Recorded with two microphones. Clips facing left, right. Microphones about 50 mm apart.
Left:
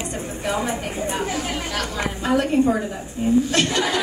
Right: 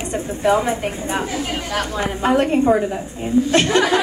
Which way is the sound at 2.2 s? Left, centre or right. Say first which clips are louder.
Right 3 dB; right.